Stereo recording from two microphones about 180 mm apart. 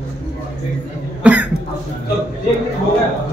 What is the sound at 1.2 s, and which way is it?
Cough, 5° right (ahead or behind).